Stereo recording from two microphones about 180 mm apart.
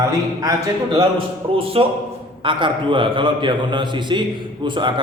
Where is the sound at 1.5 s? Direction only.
30° right (ahead or behind).